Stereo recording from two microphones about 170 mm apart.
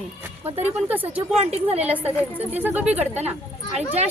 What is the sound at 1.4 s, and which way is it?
Speech, 40° right (ahead or behind).